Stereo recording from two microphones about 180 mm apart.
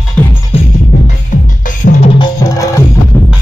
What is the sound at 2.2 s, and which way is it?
Music, 15° left (ahead or behind).